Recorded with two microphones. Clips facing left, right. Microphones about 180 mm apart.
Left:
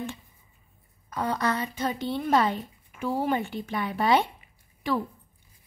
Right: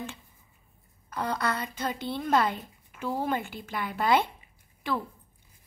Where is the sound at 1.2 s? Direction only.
15° left (ahead or behind).